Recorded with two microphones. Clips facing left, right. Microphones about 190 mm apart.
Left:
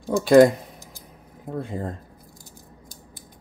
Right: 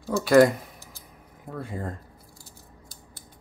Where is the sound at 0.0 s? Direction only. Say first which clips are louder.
Left 4 dB; 15° left (ahead or behind).